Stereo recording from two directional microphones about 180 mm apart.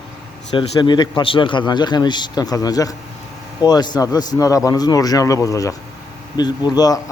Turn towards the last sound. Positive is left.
turn(degrees=20)  # may be behind; listen again after turning